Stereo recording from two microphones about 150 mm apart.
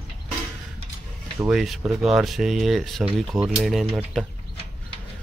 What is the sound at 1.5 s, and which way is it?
Speech, 5° right (ahead or behind).